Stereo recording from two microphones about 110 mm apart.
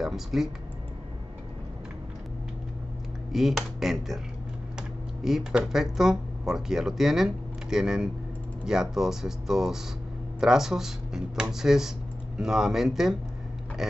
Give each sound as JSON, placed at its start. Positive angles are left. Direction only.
{"t": 0.0, "sound": "speech", "side_deg": -5}
{"t": 3.3, "sound": "speech", "side_deg": 0}
{"t": 5.2, "sound": "speech", "side_deg": -5}